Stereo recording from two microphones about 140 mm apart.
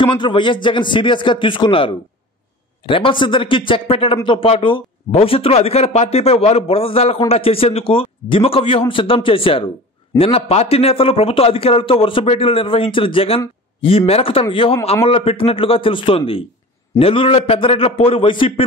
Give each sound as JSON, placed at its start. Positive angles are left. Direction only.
{"t": 0.0, "sound": "a man's voice", "side_deg": 35}